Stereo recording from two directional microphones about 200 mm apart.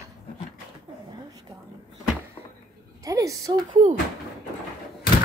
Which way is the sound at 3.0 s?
15° right (ahead or behind).